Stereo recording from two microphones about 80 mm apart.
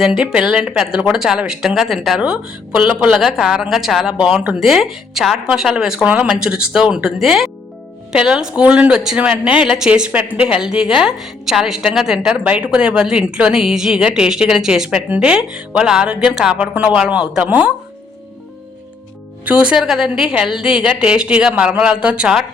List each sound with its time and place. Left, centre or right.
0.0 s a woman's voice: centre
16.7 s a man's voice: centre
19.5 s speech: centre